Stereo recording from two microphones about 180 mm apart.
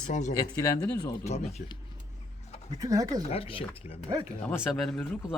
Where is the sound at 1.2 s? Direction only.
40° left (ahead or behind).